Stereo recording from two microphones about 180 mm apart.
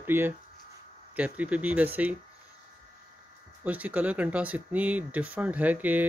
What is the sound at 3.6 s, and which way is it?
Speech, 10° right (ahead or behind).